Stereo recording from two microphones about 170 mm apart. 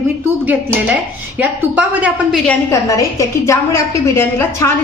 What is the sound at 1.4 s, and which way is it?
Speech, 10° right (ahead or behind).